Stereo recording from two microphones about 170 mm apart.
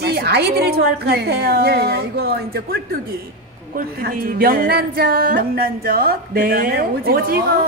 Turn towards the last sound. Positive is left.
turn(degrees=-60)  # may be behind; listen again after turning